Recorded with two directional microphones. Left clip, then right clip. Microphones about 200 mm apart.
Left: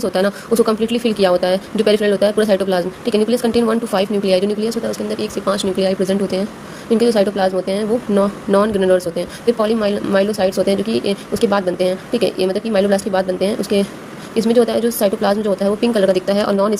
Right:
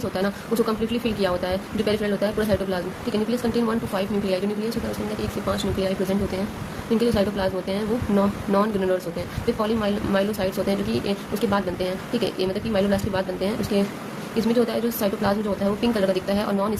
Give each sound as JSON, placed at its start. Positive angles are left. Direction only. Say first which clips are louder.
{"t": 0.0, "sound": "a woman's voice", "louder": "left 9 dB", "side_deg": 45}